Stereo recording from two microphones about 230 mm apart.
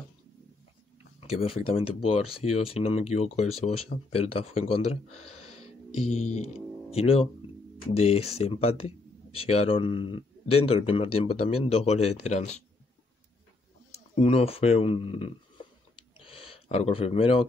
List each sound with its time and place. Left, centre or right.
1.2 s speech: left
14.1 s speech: left